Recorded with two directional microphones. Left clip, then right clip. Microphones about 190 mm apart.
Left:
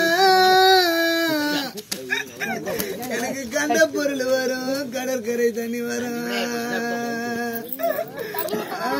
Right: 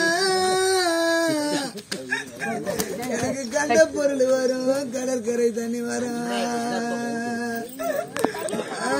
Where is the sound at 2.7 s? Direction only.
60° right (ahead or behind).